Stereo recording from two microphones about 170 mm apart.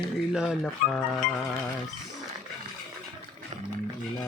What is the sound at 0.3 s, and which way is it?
Mantra, centre (ahead or behind).